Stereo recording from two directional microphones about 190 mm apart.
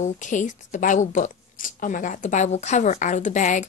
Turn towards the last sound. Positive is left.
turn(degrees=40)  # may be behind; listen again after turning